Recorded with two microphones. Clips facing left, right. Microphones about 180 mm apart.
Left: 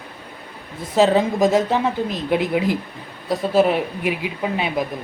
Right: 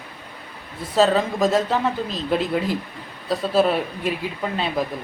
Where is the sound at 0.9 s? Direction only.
15° left (ahead or behind).